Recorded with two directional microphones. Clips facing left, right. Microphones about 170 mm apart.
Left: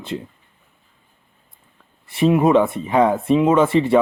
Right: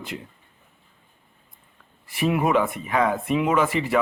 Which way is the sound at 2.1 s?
25° left (ahead or behind).